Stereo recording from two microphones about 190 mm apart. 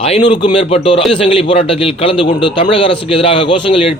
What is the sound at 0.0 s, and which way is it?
A man's voice, 30° left (ahead or behind).